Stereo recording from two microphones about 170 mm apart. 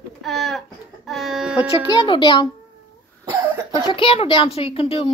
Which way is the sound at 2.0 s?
30° left (ahead or behind).